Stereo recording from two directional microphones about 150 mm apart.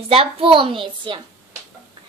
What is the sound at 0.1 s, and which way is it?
A woman's voice, 40° right (ahead or behind).